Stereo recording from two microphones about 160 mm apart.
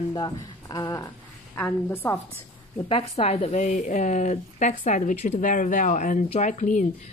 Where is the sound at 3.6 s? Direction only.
50° left (ahead or behind).